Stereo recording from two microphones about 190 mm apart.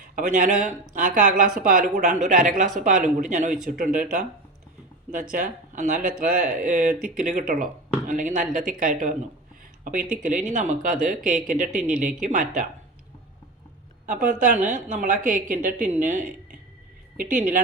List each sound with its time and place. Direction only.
0.2 s a woman's voice: 40° right (ahead or behind)
5.3 s a woman's voice: 40° right (ahead or behind)
14.1 s a woman's voice: 45° right (ahead or behind)